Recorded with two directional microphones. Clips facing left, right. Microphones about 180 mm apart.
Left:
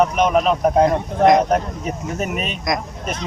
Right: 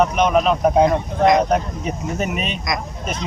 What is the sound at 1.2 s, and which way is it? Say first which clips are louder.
Speech: left 2 dB; 50° left (ahead or behind).